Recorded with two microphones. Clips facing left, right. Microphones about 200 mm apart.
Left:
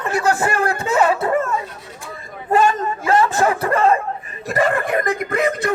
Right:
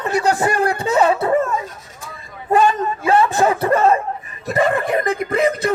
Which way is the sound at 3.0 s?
20° right (ahead or behind).